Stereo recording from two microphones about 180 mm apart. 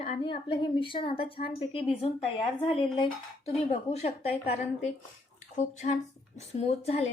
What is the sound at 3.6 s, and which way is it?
A woman's voice, 35° left (ahead or behind).